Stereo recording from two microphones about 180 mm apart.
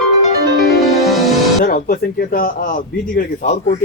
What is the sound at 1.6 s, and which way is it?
Speech, 55° left (ahead or behind).